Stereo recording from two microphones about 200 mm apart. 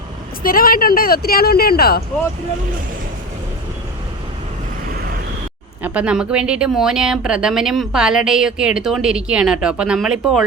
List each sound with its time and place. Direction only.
0.4 s speech: 45° left (ahead or behind)
5.8 s speech: 5° right (ahead or behind)